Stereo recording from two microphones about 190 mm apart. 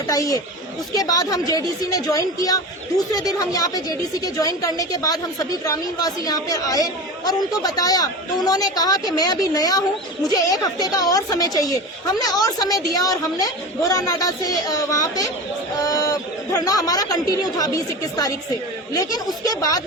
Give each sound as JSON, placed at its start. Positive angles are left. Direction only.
{"t": 0.1, "sound": "a woman's voice", "side_deg": 15}
{"t": 19.5, "sound": "a woman's voice", "side_deg": 20}